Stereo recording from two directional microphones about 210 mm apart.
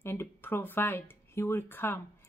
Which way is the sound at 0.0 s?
10° left (ahead or behind).